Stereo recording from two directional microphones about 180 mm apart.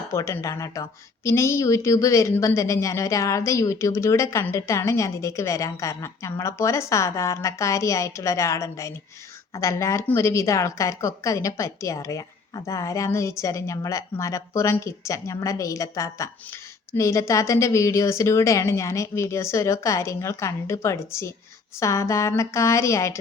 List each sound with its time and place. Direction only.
0.1 s a woman's voice: 15° left (ahead or behind)